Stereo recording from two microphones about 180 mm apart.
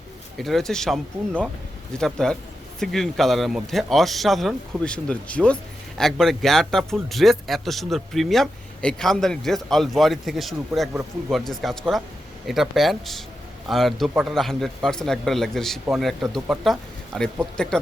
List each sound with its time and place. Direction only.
0.3 s speech: centre (ahead or behind)
2.0 s speech: 5° left (ahead or behind)